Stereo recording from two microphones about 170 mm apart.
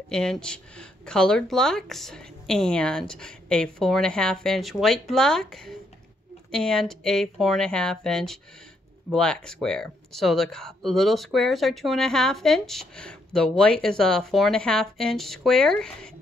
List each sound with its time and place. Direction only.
0.1 s speech: 5° left (ahead or behind)